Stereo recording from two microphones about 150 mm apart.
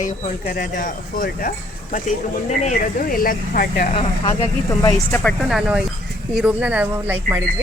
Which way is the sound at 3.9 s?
40° left (ahead or behind).